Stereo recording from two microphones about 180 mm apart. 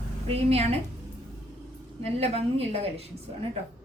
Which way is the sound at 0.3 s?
35° right (ahead or behind).